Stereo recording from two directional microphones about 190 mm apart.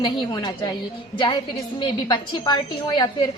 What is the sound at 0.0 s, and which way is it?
Speech, 25° left (ahead or behind).